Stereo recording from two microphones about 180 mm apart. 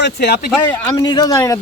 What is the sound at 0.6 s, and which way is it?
Speech, 15° left (ahead or behind).